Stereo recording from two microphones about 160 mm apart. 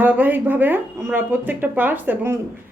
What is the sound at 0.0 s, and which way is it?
Speech, 10° right (ahead or behind).